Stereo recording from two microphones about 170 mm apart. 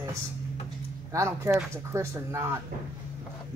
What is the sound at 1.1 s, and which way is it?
Speech, 15° right (ahead or behind).